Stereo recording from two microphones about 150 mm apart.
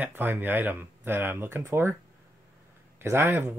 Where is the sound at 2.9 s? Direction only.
15° right (ahead or behind).